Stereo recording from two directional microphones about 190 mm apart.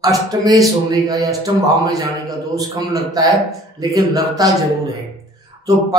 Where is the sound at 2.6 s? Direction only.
20° right (ahead or behind).